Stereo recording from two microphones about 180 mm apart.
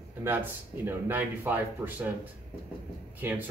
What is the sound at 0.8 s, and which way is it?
Speech, 10° right (ahead or behind).